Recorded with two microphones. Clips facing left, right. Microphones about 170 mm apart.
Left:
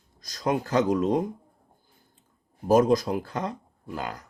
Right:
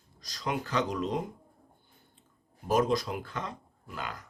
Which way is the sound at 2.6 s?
45° left (ahead or behind).